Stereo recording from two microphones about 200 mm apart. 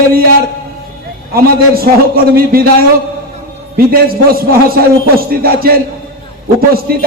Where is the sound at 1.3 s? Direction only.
50° right (ahead or behind).